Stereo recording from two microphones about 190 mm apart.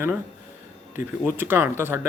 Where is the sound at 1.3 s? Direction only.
10° right (ahead or behind).